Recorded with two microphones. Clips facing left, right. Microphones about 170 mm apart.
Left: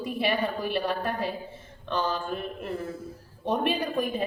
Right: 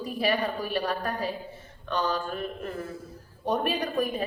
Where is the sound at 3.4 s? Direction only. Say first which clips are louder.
Left 1 dB; 30° left (ahead or behind).